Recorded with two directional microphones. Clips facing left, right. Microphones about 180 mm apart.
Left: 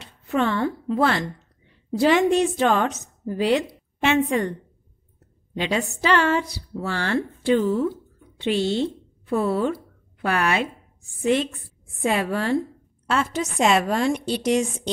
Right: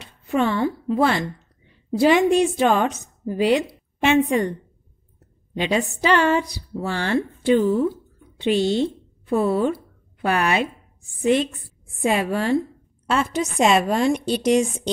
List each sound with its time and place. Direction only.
0.0 s a woman's voice: 15° right (ahead or behind)
5.6 s a woman's voice: 15° right (ahead or behind)
12.0 s a woman's voice: 15° right (ahead or behind)